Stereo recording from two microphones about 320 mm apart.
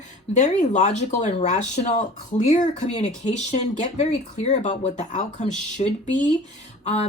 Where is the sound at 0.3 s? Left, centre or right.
Left.